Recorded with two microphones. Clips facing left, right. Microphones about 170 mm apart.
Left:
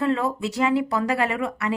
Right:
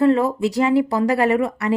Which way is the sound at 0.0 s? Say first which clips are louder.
Right 7 dB; 35° right (ahead or behind).